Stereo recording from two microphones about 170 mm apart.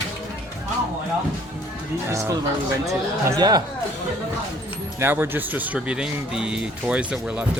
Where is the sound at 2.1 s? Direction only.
15° right (ahead or behind).